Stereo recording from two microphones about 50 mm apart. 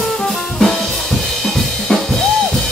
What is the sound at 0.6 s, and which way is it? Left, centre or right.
Drum kit, centre.